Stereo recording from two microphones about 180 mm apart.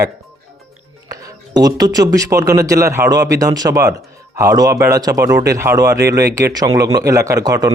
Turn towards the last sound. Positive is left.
turn(degrees=-20)  # may be behind; listen again after turning